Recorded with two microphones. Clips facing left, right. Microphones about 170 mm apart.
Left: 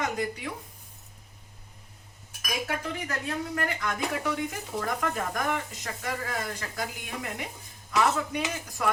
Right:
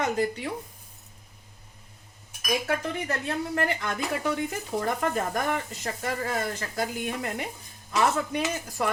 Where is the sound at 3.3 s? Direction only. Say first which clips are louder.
Right 3 dB; 25° right (ahead or behind).